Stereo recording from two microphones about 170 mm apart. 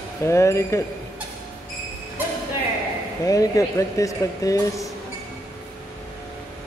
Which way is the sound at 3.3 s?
20° left (ahead or behind).